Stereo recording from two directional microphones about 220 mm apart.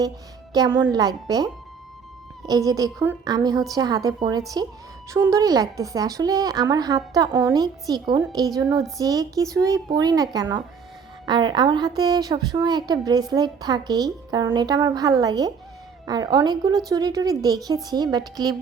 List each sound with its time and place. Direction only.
0.5 s a woman's voice: 15° right (ahead or behind)
2.5 s a woman's voice: 15° right (ahead or behind)